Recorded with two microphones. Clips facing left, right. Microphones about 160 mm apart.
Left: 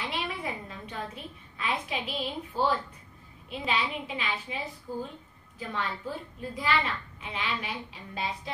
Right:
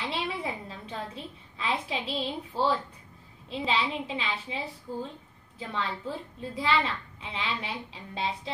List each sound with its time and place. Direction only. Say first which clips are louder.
0.0 s a sound: right 2 dB; 30° right (ahead or behind)
3.4 s a woman's voice: right 2 dB; 25° right (ahead or behind)
5.7 s a woman's voice: right 1 dB; 25° right (ahead or behind)